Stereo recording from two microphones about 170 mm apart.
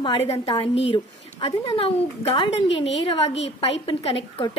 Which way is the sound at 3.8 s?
35° left (ahead or behind).